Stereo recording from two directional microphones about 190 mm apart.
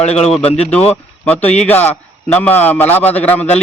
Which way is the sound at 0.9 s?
10° left (ahead or behind).